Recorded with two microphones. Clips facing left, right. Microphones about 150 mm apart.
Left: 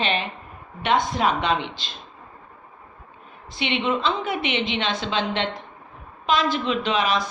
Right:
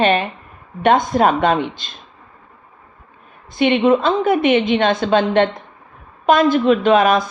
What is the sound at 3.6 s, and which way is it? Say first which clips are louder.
A woman's voice: right 10 dB; 50° right (ahead or behind).